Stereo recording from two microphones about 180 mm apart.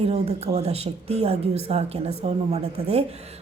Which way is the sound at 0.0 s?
35° right (ahead or behind).